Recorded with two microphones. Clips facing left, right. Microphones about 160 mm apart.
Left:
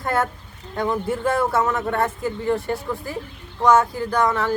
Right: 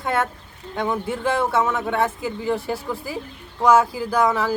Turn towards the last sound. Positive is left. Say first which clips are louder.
# right 1 dB
turn(degrees=-5)  # may be behind; listen again after turning